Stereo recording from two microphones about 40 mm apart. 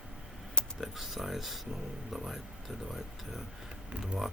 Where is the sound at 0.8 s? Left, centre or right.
Centre.